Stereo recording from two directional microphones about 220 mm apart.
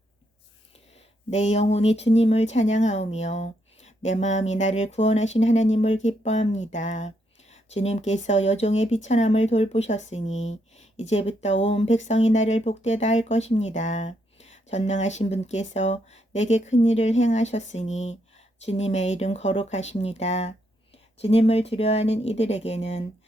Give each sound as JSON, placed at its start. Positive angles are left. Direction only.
{"t": 1.3, "sound": "speech", "side_deg": 30}